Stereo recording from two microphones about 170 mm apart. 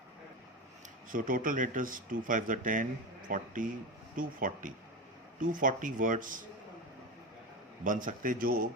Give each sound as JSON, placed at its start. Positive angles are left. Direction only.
{"t": 1.1, "sound": "speech", "side_deg": -50}
{"t": 7.9, "sound": "a man's voice", "side_deg": -50}